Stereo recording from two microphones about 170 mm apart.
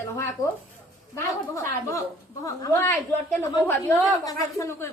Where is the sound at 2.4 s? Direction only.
20° left (ahead or behind).